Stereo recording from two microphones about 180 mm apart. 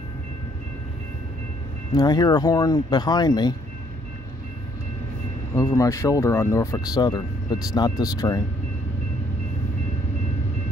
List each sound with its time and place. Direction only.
2.0 s speech: 20° left (ahead or behind)
5.6 s speech: 15° left (ahead or behind)